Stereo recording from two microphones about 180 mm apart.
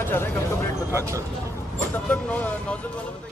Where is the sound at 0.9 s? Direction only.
15° right (ahead or behind).